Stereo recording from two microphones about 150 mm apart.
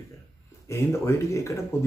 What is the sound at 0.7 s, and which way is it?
Speech, 20° left (ahead or behind).